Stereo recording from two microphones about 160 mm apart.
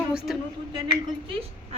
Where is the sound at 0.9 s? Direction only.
35° right (ahead or behind).